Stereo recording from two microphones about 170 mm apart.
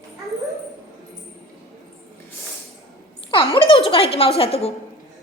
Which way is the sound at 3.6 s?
30° left (ahead or behind).